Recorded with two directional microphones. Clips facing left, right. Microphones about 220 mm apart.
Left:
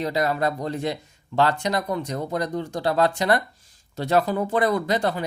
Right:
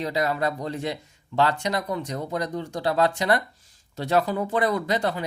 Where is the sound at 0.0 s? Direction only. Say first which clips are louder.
Left 2 dB; 45° left (ahead or behind).